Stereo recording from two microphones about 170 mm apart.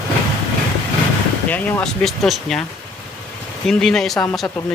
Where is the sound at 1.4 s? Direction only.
10° left (ahead or behind).